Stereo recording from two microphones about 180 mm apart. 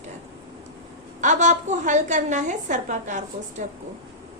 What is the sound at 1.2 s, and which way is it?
A woman's voice, 40° right (ahead or behind).